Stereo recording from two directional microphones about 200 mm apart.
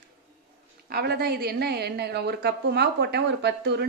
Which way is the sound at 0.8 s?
55° right (ahead or behind).